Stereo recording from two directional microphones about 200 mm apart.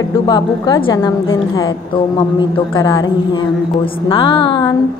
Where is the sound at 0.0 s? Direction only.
20° left (ahead or behind).